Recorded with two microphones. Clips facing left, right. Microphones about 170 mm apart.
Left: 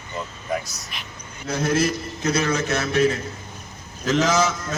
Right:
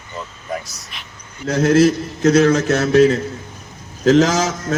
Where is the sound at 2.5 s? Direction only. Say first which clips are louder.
Right 8 dB; 45° right (ahead or behind).